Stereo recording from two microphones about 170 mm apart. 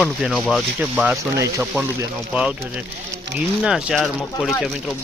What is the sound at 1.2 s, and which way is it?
Speech, 20° right (ahead or behind).